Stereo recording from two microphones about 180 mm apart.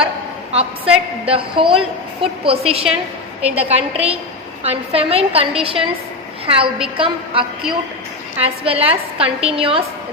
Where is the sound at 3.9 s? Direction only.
35° right (ahead or behind).